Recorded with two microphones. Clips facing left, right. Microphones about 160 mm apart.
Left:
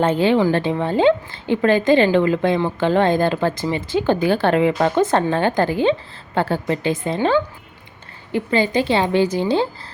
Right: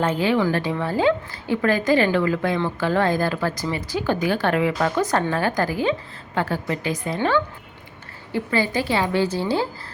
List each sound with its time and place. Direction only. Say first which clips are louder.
0.0 s speech: left 4 dB; 30° left (ahead or behind)